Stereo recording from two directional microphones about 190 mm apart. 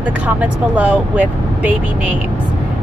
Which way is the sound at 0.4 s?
5° right (ahead or behind).